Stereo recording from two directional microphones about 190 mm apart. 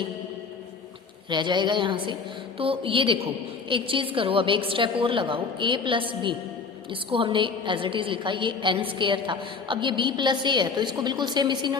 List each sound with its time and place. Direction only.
1.3 s a woman's voice: 25° right (ahead or behind)